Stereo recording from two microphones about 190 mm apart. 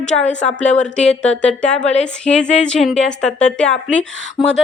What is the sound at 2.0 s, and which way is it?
A woman's voice, 5° left (ahead or behind).